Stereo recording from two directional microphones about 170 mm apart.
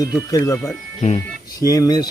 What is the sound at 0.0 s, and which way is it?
Speech, 20° left (ahead or behind).